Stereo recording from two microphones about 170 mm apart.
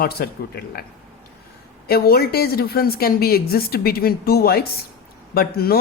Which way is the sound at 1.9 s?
65° left (ahead or behind).